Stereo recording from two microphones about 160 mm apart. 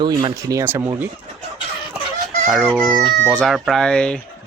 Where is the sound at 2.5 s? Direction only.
Centre (ahead or behind).